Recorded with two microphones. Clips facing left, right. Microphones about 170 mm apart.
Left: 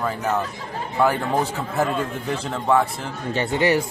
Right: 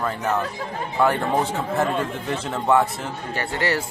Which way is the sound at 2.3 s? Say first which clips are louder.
Even; centre (ahead or behind).